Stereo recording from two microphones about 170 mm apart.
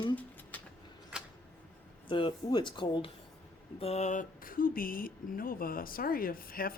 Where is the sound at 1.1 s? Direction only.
5° right (ahead or behind).